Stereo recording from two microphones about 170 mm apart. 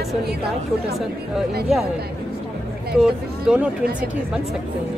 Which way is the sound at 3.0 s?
5° right (ahead or behind).